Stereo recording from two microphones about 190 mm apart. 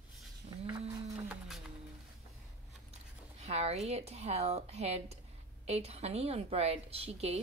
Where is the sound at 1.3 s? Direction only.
Centre (ahead or behind).